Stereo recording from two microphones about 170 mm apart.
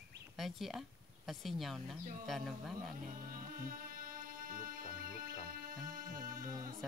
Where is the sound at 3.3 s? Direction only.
55° right (ahead or behind).